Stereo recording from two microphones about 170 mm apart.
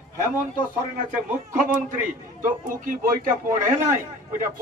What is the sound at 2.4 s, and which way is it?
A man's voice, 50° right (ahead or behind).